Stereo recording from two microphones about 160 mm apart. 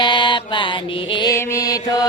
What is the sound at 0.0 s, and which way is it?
Mantra, 30° left (ahead or behind).